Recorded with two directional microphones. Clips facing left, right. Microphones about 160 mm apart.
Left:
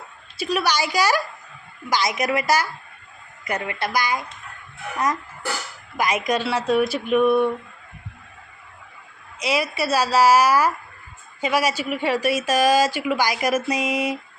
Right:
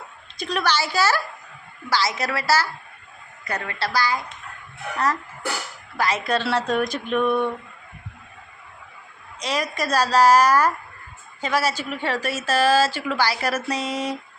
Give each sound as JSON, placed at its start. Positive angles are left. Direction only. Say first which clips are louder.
{"t": 0.3, "sound": "a woman's voice", "louder": "left 1 dB", "side_deg": 10}
{"t": 6.0, "sound": "a woman's voice", "louder": "left 1 dB", "side_deg": 15}
{"t": 9.4, "sound": "a woman's voice", "louder": "left 3 dB", "side_deg": 10}